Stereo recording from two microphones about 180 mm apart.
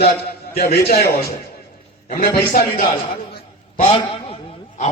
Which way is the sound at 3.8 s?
30° left (ahead or behind).